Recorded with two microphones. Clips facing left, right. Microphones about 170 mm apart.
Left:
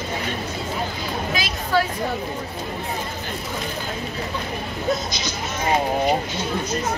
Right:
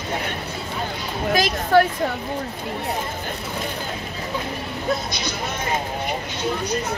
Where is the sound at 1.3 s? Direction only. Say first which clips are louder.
Right 7 dB; 50° right (ahead or behind).